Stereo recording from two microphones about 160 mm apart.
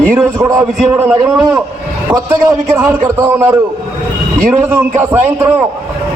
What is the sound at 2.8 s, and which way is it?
Speech, 20° right (ahead or behind).